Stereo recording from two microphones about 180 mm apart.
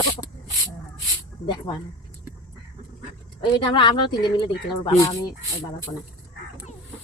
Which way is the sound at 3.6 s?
25° left (ahead or behind).